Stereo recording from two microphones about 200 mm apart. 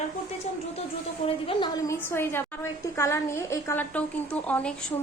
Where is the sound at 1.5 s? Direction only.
25° left (ahead or behind).